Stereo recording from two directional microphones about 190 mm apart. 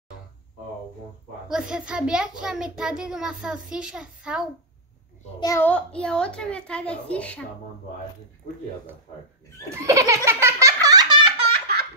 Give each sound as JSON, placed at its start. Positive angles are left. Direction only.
{"t": 1.5, "sound": "a child's voice", "side_deg": -5}
{"t": 5.4, "sound": "a child's voice", "side_deg": 15}
{"t": 9.7, "sound": "belly laugh", "side_deg": -15}